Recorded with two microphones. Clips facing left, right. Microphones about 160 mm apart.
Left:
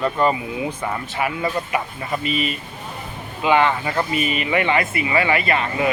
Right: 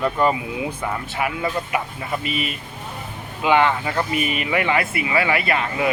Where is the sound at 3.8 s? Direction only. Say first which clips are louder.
Left 1 dB; 5° left (ahead or behind).